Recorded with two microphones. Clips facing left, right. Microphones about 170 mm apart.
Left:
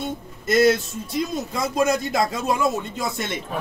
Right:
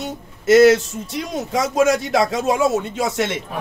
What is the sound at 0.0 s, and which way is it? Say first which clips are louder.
A man's voice: right 3 dB; 80° right.